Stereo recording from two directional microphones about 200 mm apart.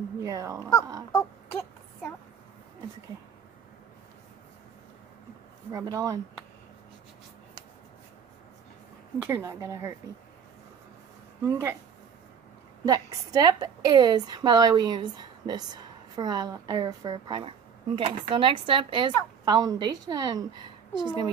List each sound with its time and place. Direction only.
0.2 s speech: 15° right (ahead or behind)
5.7 s a woman's voice: 15° right (ahead or behind)
9.2 s a woman's voice: 15° right (ahead or behind)
11.4 s a woman's voice: 15° right (ahead or behind)
12.8 s a woman's voice: 20° right (ahead or behind)